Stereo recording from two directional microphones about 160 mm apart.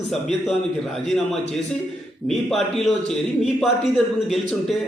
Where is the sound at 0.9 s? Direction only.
Centre (ahead or behind).